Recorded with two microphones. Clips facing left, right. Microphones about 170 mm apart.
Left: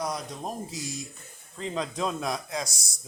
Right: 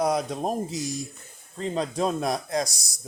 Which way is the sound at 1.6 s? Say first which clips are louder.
Right 4 dB; 40° right (ahead or behind).